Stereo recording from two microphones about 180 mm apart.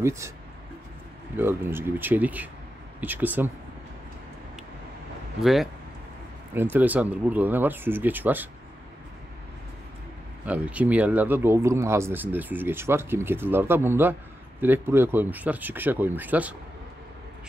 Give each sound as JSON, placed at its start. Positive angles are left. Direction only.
{"t": 0.0, "sound": "speech", "side_deg": -15}
{"t": 1.3, "sound": "speech", "side_deg": -10}
{"t": 5.4, "sound": "speech", "side_deg": 0}
{"t": 10.4, "sound": "speech", "side_deg": -10}